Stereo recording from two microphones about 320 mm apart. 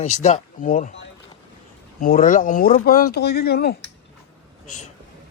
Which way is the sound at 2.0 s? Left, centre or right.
Left.